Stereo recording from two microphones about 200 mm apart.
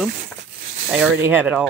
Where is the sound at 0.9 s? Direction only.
10° right (ahead or behind).